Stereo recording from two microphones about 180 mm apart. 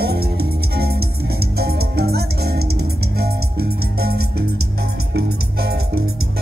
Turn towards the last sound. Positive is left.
turn(degrees=-65)  # may be behind; listen again after turning